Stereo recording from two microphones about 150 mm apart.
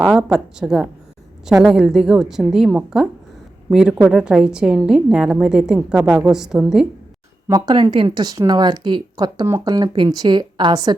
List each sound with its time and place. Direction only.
0.1 s a woman's voice: 5° right (ahead or behind)
7.4 s speech: 25° right (ahead or behind)